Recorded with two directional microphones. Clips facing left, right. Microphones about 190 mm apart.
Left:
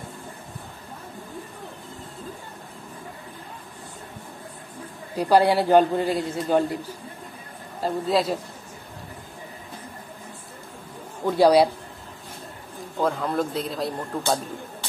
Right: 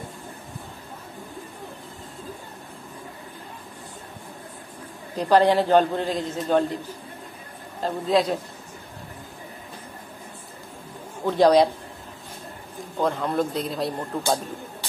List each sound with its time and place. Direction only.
5.1 s a man's voice: 10° left (ahead or behind)
7.8 s a man's voice: 5° left (ahead or behind)
11.2 s a man's voice: 10° left (ahead or behind)
12.9 s a man's voice: centre (ahead or behind)